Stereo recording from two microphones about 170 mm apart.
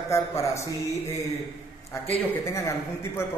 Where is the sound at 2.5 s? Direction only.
15° left (ahead or behind).